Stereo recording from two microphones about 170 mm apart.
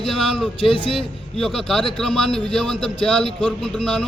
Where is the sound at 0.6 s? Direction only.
30° left (ahead or behind).